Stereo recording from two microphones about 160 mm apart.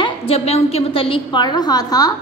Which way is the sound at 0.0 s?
35° left (ahead or behind).